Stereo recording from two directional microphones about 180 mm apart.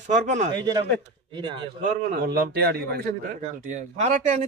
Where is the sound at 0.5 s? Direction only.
25° right (ahead or behind).